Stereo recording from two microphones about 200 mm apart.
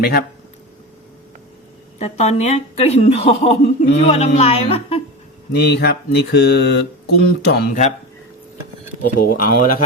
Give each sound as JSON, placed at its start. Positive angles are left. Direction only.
{"t": 0.0, "sound": "speech", "side_deg": 50}
{"t": 2.0, "sound": "speech", "side_deg": 35}
{"t": 5.5, "sound": "a sound", "side_deg": 55}
{"t": 9.1, "sound": "speech", "side_deg": 45}